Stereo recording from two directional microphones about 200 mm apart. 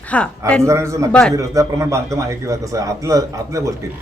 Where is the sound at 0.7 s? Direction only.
15° right (ahead or behind).